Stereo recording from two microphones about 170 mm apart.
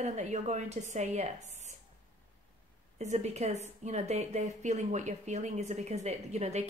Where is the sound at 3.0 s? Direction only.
40° right (ahead or behind).